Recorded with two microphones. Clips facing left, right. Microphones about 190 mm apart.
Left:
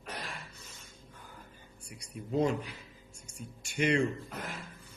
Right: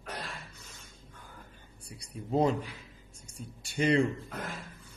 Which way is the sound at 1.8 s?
35° right (ahead or behind).